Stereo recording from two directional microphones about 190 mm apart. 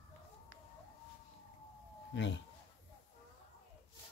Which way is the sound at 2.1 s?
70° left (ahead or behind).